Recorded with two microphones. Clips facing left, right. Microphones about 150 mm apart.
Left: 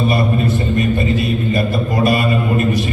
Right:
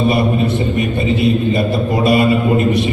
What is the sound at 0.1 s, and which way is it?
A man's voice, 20° right (ahead or behind).